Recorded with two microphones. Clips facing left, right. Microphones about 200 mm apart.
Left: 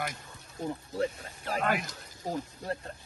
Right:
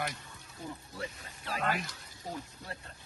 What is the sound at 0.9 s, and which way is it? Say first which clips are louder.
Speech: left 10 dB; 45° left (ahead or behind).